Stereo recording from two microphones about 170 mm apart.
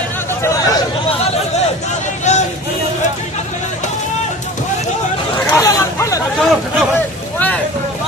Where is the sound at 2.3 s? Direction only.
45° left (ahead or behind).